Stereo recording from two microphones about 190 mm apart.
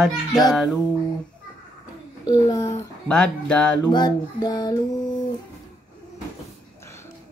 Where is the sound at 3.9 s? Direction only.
20° left (ahead or behind).